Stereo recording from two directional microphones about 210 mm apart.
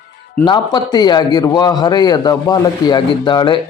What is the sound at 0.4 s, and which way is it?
A man's voice, 20° left (ahead or behind).